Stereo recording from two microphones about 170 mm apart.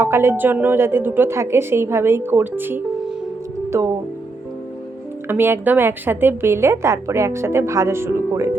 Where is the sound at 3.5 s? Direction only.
20° right (ahead or behind).